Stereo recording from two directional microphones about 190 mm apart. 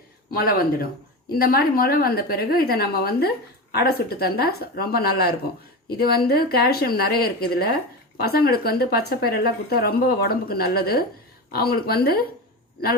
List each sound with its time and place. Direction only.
0.3 s a woman's voice: 50° left (ahead or behind)